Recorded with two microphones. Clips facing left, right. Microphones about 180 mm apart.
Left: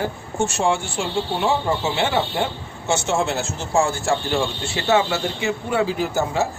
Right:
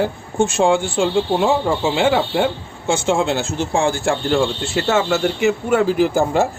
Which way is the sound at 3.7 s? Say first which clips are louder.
Even; 60° right (ahead or behind).